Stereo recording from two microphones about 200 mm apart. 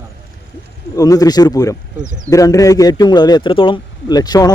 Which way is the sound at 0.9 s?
20° left (ahead or behind).